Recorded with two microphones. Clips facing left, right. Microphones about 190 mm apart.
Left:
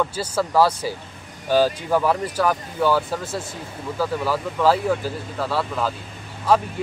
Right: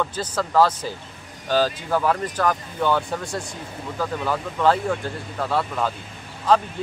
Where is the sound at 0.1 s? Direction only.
10° left (ahead or behind).